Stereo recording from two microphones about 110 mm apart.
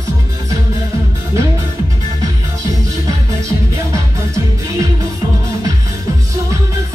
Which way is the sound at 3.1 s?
25° right (ahead or behind).